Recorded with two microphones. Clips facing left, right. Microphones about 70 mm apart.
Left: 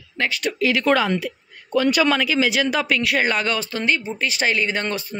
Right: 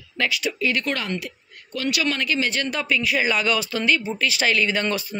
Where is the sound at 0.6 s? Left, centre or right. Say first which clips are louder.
Left 4 dB; left.